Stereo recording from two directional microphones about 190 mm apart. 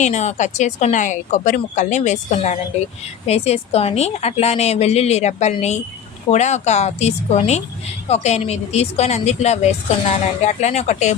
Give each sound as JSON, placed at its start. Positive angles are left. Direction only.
{"t": 0.0, "sound": "a woman's voice", "side_deg": 35}